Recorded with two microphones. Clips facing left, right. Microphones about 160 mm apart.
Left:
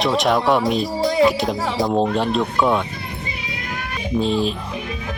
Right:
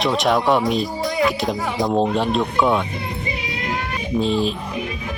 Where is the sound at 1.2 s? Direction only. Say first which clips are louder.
Left 1 dB; centre (ahead or behind).